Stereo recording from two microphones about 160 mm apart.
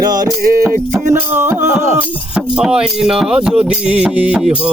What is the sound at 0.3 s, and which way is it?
Music, 15° right (ahead or behind).